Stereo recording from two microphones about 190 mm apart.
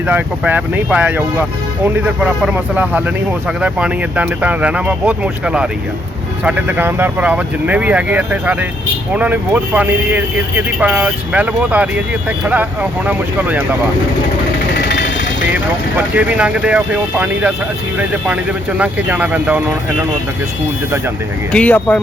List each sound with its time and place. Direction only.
0.1 s speech: 10° right (ahead or behind)
13.1 s speech: 10° right (ahead or behind)
14.8 s vehicle: 65° left (ahead or behind)
15.5 s speech: 10° right (ahead or behind)
18.8 s speech: 10° right (ahead or behind)
21.5 s speech: 5° left (ahead or behind)